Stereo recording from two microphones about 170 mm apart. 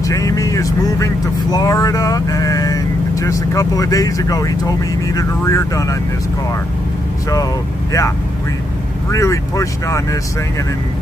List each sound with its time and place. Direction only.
0.0 s speech: 20° left (ahead or behind)
9.1 s speech: 20° left (ahead or behind)